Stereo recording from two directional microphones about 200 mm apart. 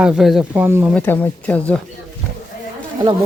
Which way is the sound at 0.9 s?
10° left (ahead or behind).